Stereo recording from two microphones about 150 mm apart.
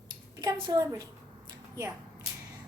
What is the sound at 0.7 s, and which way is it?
Speech, 25° right (ahead or behind).